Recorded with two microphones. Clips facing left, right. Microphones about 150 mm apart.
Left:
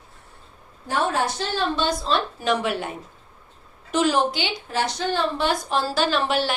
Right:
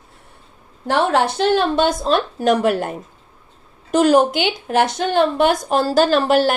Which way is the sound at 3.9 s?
45° right (ahead or behind).